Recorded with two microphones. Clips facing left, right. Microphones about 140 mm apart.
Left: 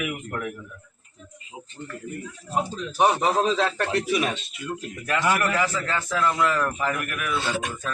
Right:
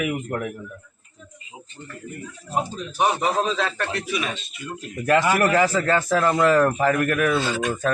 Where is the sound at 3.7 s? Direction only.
30° left (ahead or behind).